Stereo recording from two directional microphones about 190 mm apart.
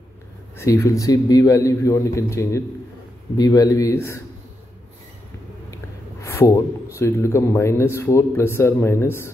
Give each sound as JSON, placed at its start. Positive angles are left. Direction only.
{"t": 0.6, "sound": "a man's voice", "side_deg": 15}
{"t": 6.2, "sound": "a man's voice", "side_deg": 15}